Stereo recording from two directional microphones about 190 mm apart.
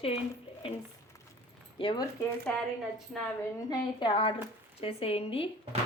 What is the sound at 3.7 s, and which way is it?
Speech, 25° left (ahead or behind).